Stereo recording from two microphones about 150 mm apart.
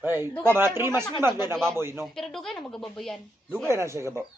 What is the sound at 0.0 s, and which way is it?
A man's voice, 15° right (ahead or behind).